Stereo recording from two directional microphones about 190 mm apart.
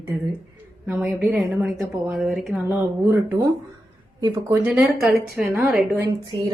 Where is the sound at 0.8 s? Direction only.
10° right (ahead or behind).